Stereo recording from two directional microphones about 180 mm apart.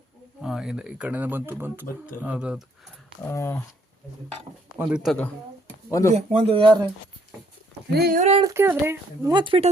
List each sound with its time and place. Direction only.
0.4 s speech: 5° right (ahead or behind)
3.2 s speech: 15° left (ahead or behind)
4.8 s speech: 5° right (ahead or behind)
5.9 s speech: 15° left (ahead or behind)
6.1 s speech: 30° right (ahead or behind)
7.9 s speech: 60° right (ahead or behind)
8.2 s speech: 35° right (ahead or behind)
8.4 s speech: 15° right (ahead or behind)
9.3 s speech: 30° right (ahead or behind)